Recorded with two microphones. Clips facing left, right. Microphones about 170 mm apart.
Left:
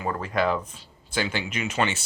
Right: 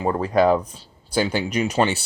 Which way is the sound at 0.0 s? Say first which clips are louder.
Right 7 dB; 30° right (ahead or behind).